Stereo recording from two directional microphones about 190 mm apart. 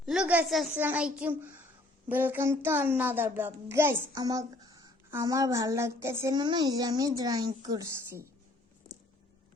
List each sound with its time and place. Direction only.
0.0 s a woman's voice: 5° right (ahead or behind)